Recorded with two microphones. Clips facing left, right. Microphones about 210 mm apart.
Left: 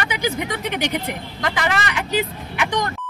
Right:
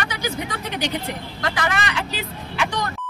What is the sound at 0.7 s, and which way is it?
Speech, 20° left (ahead or behind).